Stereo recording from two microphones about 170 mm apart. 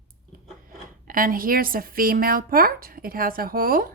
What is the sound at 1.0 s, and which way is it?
Speech, 55° right (ahead or behind).